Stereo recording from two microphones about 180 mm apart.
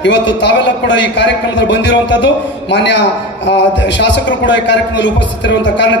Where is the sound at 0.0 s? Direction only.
80° left.